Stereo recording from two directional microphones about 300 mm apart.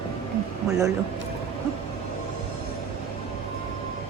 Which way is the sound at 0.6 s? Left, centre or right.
Centre.